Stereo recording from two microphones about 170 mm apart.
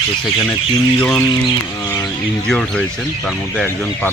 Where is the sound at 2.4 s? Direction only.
5° left (ahead or behind).